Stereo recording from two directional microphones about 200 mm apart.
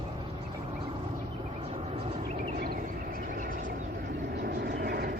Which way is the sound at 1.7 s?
30° right (ahead or behind).